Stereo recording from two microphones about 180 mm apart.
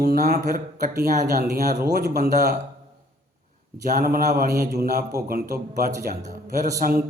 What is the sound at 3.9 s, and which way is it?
Speech, 55° right (ahead or behind).